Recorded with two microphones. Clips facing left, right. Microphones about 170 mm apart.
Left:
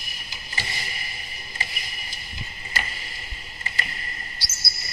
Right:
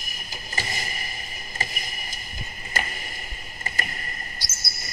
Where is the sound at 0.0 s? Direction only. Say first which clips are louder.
Right 3 dB; 45° right (ahead or behind).